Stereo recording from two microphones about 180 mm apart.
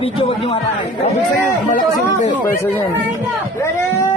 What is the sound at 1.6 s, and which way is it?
Speech, 45° left (ahead or behind).